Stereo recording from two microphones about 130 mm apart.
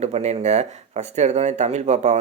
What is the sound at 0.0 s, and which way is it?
Speech, 55° right (ahead or behind).